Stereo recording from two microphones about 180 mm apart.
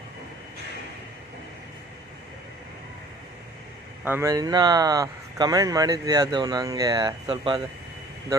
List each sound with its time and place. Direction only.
4.0 s speech: 15° right (ahead or behind)